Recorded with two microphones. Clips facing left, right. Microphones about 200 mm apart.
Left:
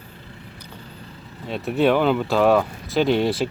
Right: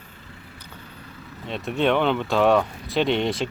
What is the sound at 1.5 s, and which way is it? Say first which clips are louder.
Speech: left 3 dB; centre (ahead or behind).